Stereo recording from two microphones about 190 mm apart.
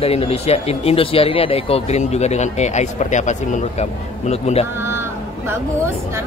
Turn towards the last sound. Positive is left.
turn(degrees=35)  # may be behind; listen again after turning